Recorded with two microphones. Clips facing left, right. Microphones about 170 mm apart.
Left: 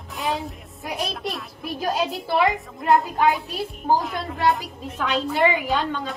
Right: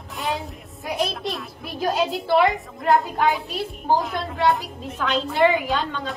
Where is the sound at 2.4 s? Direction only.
Centre (ahead or behind).